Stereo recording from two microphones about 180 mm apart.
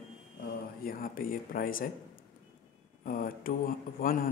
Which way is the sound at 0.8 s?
50° left (ahead or behind).